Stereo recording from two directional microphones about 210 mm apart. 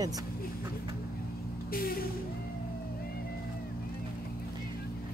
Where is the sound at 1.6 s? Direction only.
45° left (ahead or behind).